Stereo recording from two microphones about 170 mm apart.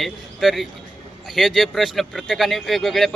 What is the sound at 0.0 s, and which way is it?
A man's voice, centre (ahead or behind).